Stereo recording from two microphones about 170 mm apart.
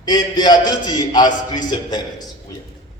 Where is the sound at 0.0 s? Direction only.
25° left (ahead or behind).